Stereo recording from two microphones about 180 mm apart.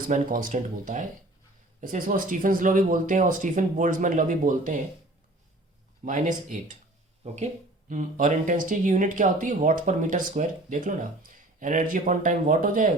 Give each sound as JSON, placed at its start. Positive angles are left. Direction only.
{"t": 0.1, "sound": "speech", "side_deg": -50}
{"t": 6.1, "sound": "speech", "side_deg": -45}